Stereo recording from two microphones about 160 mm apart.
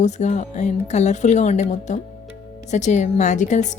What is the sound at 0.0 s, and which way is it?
A woman's voice, 45° left (ahead or behind).